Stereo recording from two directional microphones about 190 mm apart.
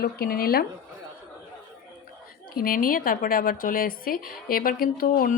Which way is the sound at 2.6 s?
50° left (ahead or behind).